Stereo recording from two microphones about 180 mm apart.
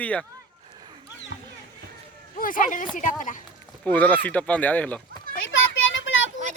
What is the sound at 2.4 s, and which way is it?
Speech, 50° left (ahead or behind).